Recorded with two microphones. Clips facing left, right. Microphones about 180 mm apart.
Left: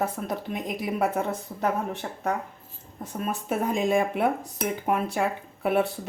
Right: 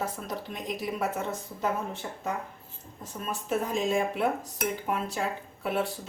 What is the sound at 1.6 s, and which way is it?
Speech, 65° left (ahead or behind).